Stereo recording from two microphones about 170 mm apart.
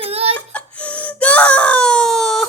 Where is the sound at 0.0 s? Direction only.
35° right (ahead or behind).